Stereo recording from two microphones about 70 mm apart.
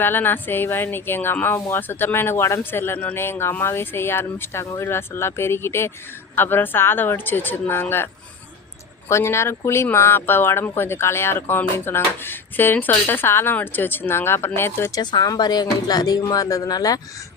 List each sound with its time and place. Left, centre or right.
0.0 s speech: left
4.6 s speech: left
4.9 s speech: left
15.0 s speech: left
15.4 s speech: left
16.2 s speech: left